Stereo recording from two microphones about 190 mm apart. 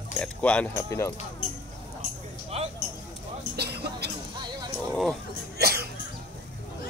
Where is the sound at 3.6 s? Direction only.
60° right (ahead or behind).